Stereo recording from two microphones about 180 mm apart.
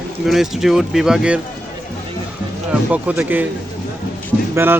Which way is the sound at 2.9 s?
10° right (ahead or behind).